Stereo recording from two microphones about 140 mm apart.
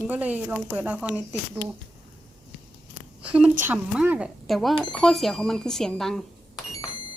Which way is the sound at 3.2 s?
10° right (ahead or behind).